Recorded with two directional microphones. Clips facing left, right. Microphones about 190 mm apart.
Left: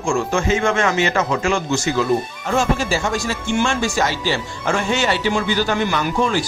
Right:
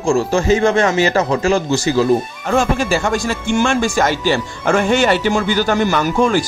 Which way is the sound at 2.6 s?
55° right (ahead or behind).